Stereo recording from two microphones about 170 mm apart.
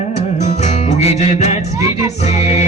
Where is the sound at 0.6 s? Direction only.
40° left (ahead or behind).